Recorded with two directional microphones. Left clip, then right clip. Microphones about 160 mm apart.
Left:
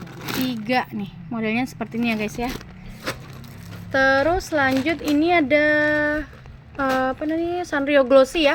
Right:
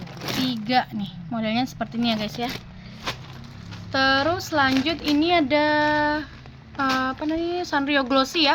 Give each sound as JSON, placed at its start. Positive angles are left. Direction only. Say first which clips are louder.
{"t": 0.4, "sound": "a sound", "louder": "even", "side_deg": 20}
{"t": 1.3, "sound": "a woman's voice", "louder": "left 1 dB", "side_deg": 20}
{"t": 3.9, "sound": "a woman's voice", "louder": "left 3 dB", "side_deg": 20}